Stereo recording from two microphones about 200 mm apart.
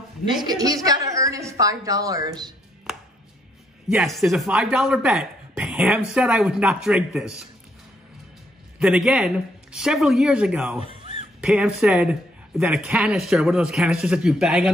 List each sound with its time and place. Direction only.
0.3 s a woman's voice: 20° right (ahead or behind)
2.9 s chopping: centre (ahead or behind)
3.9 s speech: centre (ahead or behind)
8.7 s speech: 5° right (ahead or behind)
10.8 s fowl: 25° right (ahead or behind)
11.4 s speech: 5° right (ahead or behind)